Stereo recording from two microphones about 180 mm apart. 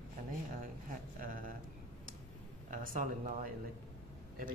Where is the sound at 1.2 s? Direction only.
50° right (ahead or behind).